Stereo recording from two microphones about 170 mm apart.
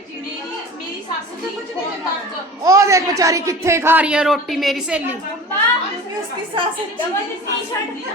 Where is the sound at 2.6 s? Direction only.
20° right (ahead or behind).